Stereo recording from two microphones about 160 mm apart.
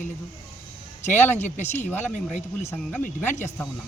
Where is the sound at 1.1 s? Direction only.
10° left (ahead or behind).